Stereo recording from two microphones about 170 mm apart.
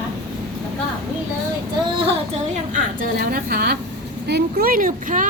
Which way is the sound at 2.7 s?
55° right (ahead or behind).